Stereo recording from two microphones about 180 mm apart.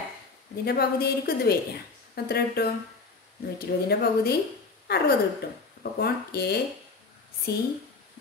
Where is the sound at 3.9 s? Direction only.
60° left (ahead or behind).